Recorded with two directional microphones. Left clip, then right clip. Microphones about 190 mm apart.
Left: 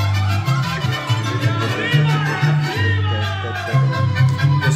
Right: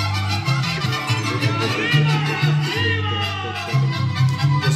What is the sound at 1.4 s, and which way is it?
Music, 15° left (ahead or behind).